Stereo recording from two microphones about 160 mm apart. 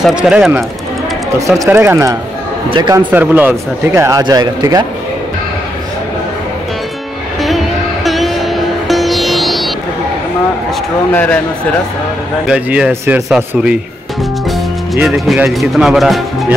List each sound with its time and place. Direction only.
0.0 s speech: 5° right (ahead or behind)
1.5 s a man's voice: 15° right (ahead or behind)
7.4 s music: centre (ahead or behind)
11.1 s a man's voice: 10° left (ahead or behind)
12.4 s speech: 5° right (ahead or behind)
15.0 s speech: centre (ahead or behind)